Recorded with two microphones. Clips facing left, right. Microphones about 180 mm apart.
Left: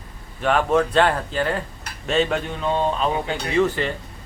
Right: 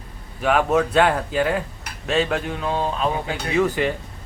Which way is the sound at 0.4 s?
5° right (ahead or behind).